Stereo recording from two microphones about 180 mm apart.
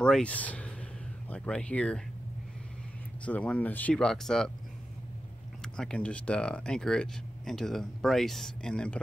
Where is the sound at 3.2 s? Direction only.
5° left (ahead or behind).